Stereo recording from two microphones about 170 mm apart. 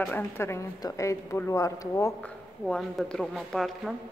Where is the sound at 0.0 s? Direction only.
10° left (ahead or behind).